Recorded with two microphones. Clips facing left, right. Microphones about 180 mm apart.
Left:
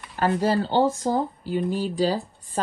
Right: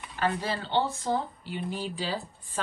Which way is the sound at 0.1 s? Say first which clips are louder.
Left 8 dB; 45° left (ahead or behind).